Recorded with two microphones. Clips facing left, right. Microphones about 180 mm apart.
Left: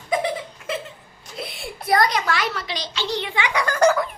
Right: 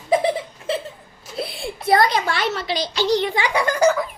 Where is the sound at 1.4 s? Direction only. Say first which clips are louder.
Right 5 dB; 30° right (ahead or behind).